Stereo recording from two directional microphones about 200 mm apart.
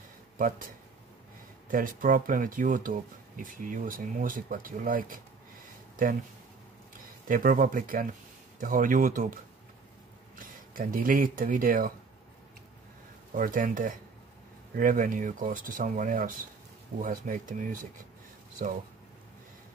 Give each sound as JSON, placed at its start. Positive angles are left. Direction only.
{"t": 1.7, "sound": "speech", "side_deg": -45}
{"t": 7.2, "sound": "speech", "side_deg": -45}
{"t": 13.3, "sound": "speech", "side_deg": -45}